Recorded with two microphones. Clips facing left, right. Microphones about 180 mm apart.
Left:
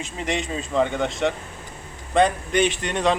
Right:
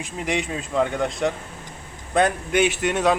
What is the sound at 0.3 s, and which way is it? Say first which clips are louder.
Speech: right 1 dB; centre (ahead or behind).